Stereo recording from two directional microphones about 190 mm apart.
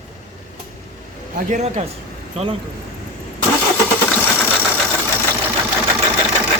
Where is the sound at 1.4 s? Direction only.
40° right (ahead or behind).